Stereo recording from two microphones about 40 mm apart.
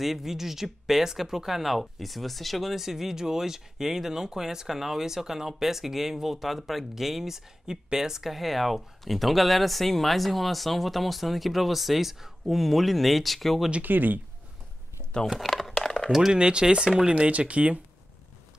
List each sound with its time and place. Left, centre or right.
0.0 s speech: centre
13.8 s speech: right
15.2 s crumpling: centre
16.1 s speech: centre
16.3 s speech: right